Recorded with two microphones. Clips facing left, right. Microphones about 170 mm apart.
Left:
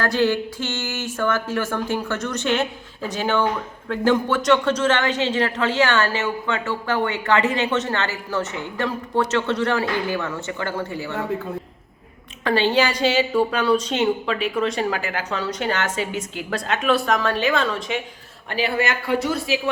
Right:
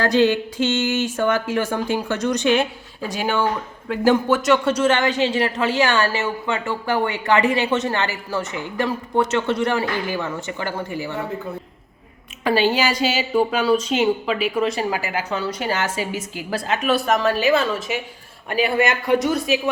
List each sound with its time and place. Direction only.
0.0 s speech: 20° right (ahead or behind)
12.5 s a woman's voice: 10° right (ahead or behind)
18.5 s speech: 15° right (ahead or behind)